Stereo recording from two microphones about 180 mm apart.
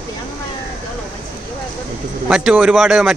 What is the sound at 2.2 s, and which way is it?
Speech, 5° right (ahead or behind).